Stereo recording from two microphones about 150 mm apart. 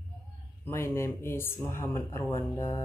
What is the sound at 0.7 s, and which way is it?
Speech, 15° left (ahead or behind).